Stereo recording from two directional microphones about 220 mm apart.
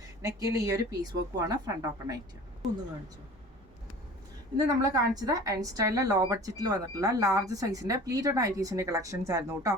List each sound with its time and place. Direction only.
0.2 s a woman's voice: 15° right (ahead or behind)
2.6 s speech: centre (ahead or behind)
4.5 s a woman's voice: 15° right (ahead or behind)